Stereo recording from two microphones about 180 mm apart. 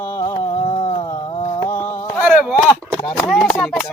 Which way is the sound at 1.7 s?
15° left (ahead or behind).